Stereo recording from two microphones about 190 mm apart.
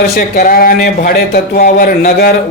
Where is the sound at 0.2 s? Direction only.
45° left (ahead or behind).